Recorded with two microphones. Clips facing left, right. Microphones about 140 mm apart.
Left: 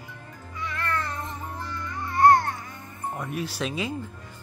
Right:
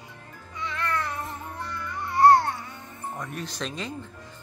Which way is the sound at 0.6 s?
20° right (ahead or behind).